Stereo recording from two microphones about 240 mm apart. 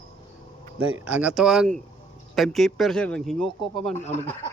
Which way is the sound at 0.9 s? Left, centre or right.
Centre.